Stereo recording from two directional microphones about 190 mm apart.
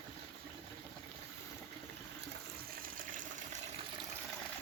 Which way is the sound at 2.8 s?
45° right (ahead or behind).